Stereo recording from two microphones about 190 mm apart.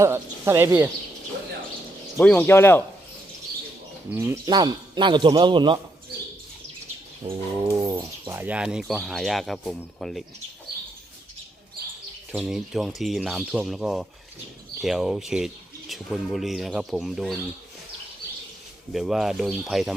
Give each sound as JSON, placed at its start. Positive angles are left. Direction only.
{"t": 0.0, "sound": "speech", "side_deg": -15}
{"t": 2.1, "sound": "speech", "side_deg": 10}
{"t": 4.1, "sound": "a man's voice", "side_deg": -10}
{"t": 7.8, "sound": "bird", "side_deg": -20}
{"t": 8.4, "sound": "speech", "side_deg": -5}
{"t": 12.3, "sound": "speech", "side_deg": -5}
{"t": 18.9, "sound": "speech", "side_deg": 0}